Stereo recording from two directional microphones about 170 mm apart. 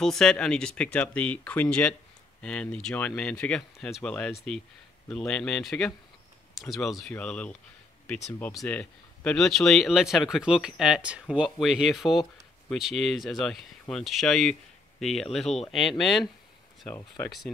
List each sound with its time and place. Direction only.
0.0 s speech: 5° left (ahead or behind)
15.4 s speech: 40° left (ahead or behind)
15.7 s speech: centre (ahead or behind)
16.8 s speech: 15° left (ahead or behind)